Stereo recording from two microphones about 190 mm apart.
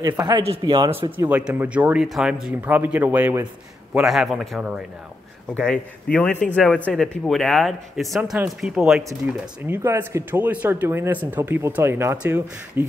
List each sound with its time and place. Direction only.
0.0 s speech: 10° right (ahead or behind)
0.4 s speech: 25° right (ahead or behind)
0.8 s speech: 10° right (ahead or behind)
9.8 s speech: 15° right (ahead or behind)